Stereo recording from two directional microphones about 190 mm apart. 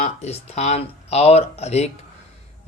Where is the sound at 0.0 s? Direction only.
35° left (ahead or behind).